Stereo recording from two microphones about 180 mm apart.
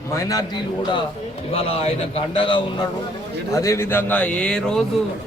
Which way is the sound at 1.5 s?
30° left (ahead or behind).